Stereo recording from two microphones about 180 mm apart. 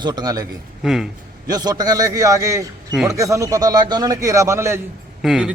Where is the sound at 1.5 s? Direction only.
20° right (ahead or behind).